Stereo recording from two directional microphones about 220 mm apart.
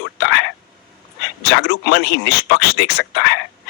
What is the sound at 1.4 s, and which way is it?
Speech, 45° left (ahead or behind).